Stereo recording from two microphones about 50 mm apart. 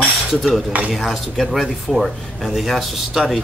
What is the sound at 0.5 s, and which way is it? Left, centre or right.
Cutlery, right.